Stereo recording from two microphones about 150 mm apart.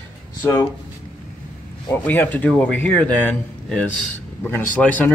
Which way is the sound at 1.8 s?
10° left (ahead or behind).